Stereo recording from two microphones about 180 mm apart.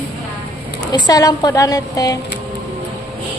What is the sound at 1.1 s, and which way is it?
A woman's voice, 20° left (ahead or behind).